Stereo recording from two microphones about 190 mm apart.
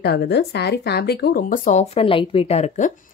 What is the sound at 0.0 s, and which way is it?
Speech, 60° left (ahead or behind).